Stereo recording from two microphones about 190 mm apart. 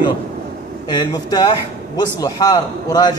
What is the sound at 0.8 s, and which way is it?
A man's voice, 20° left (ahead or behind).